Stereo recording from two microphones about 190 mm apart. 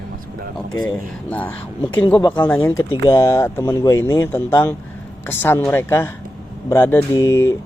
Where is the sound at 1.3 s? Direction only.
10° left (ahead or behind).